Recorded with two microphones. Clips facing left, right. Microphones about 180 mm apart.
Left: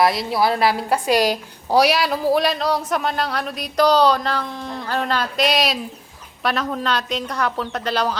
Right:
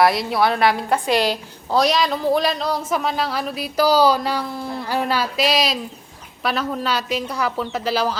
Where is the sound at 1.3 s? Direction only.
10° left (ahead or behind).